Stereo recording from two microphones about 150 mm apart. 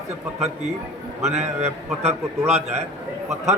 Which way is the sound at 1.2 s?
45° right (ahead or behind).